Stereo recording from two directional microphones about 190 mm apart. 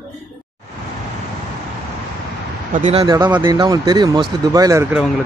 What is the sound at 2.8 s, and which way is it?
Speech, 30° right (ahead or behind).